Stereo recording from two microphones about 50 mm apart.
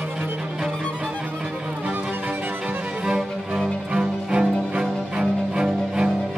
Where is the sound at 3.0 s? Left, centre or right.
Centre.